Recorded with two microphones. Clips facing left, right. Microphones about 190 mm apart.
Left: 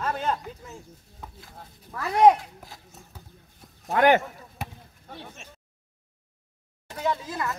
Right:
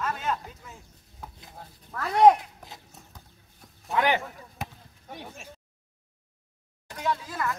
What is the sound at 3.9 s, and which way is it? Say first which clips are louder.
Speech: left 6 dB; 50° left (ahead or behind).